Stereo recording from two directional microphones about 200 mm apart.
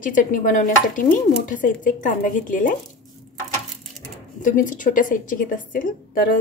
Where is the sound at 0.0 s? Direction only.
40° left (ahead or behind).